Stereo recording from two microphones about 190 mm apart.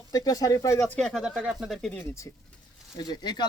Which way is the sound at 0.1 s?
20° left (ahead or behind).